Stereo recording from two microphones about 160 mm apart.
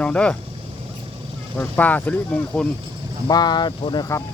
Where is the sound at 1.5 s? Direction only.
10° left (ahead or behind).